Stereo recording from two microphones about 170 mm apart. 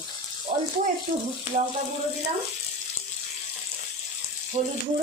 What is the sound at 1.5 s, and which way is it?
Speech, 40° left (ahead or behind).